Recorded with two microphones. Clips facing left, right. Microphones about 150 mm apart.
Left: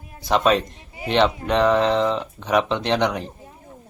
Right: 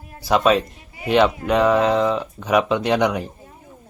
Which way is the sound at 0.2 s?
5° right (ahead or behind).